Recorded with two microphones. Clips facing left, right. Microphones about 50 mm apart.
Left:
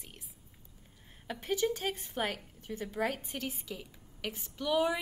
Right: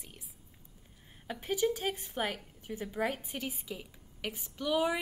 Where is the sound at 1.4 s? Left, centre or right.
Centre.